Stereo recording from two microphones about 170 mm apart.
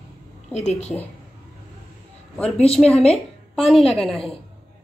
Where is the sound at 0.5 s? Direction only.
40° left (ahead or behind).